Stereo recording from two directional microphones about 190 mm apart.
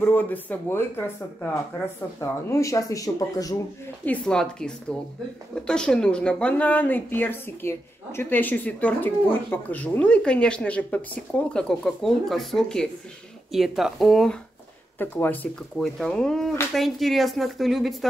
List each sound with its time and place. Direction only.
0.0 s a woman's voice: 10° left (ahead or behind)
4.0 s a woman's voice: 5° left (ahead or behind)